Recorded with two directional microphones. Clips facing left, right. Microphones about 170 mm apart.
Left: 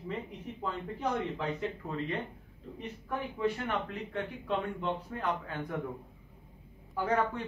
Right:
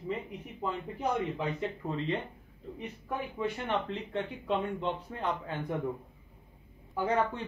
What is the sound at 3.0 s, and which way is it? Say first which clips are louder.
Speech: left 2 dB; 20° right (ahead or behind).